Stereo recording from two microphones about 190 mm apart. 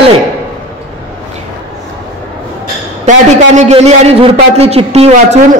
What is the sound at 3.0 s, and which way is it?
A man's voice, 35° right (ahead or behind).